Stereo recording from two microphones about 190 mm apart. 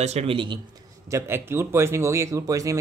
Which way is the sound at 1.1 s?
15° right (ahead or behind).